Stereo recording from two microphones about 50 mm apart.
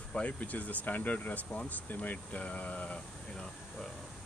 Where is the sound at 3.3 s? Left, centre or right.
Centre.